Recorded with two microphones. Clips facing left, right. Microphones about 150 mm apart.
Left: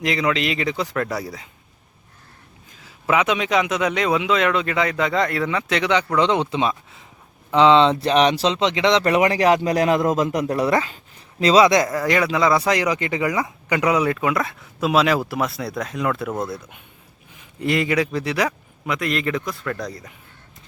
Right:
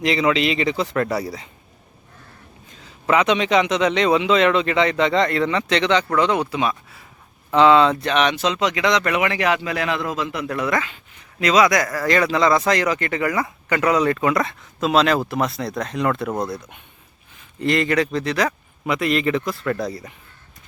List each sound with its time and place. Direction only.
0.0 s a man's voice: centre (ahead or behind)
2.6 s a man's voice: 5° left (ahead or behind); by 7.9 s 20° left (ahead or behind)
8.0 s a man's voice: 35° left (ahead or behind); by 18.5 s 10° left (ahead or behind)
18.9 s a man's voice: centre (ahead or behind)